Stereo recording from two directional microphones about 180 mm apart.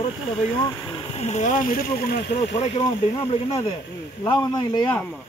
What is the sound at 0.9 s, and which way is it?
Speech, 35° left (ahead or behind).